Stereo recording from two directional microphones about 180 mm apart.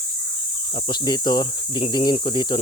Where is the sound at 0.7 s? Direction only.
30° left (ahead or behind).